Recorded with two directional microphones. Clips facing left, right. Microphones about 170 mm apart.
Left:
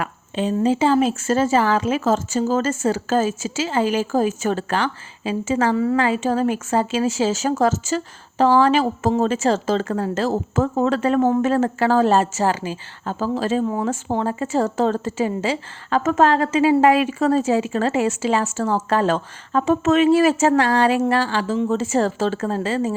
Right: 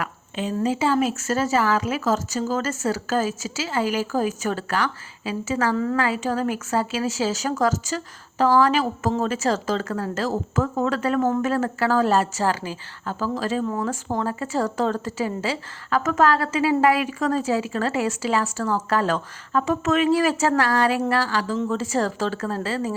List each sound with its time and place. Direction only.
0.0 s speech: 30° left (ahead or behind)
5.7 s a woman's voice: 10° left (ahead or behind)
6.0 s speech: 25° left (ahead or behind)